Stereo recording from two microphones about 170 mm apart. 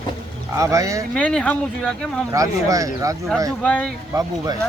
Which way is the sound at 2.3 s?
20° right (ahead or behind).